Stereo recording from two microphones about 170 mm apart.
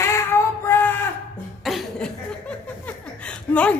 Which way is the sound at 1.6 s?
Centre (ahead or behind).